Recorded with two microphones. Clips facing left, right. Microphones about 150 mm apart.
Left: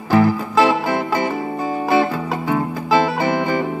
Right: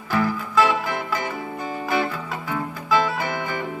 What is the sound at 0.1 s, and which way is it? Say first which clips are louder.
Music: left 7 dB; 40° left (ahead or behind).